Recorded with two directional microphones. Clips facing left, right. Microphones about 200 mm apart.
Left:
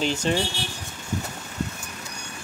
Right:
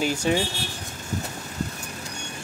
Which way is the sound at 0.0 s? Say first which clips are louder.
Right 1 dB; 10° right (ahead or behind).